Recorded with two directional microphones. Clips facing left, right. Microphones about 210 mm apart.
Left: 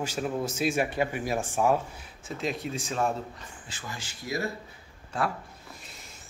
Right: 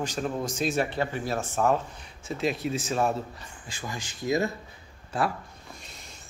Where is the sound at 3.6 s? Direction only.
15° right (ahead or behind).